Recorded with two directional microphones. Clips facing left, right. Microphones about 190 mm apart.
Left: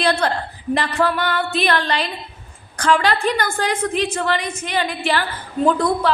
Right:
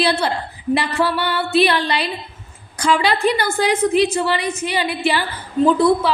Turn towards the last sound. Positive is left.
turn(degrees=-10)  # may be behind; listen again after turning